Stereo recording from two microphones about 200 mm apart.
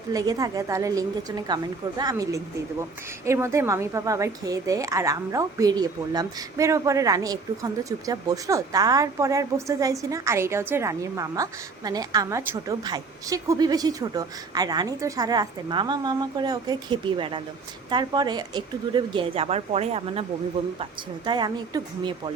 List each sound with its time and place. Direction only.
0.1 s a woman's voice: 20° right (ahead or behind)
21.2 s a woman's voice: 20° right (ahead or behind)